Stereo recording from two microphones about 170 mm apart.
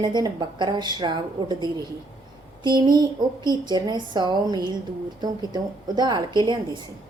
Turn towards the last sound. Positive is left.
turn(degrees=-25)  # may be behind; listen again after turning